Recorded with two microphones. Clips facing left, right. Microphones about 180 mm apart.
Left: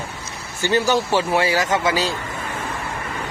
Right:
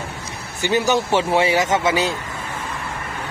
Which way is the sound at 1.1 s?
25° right (ahead or behind).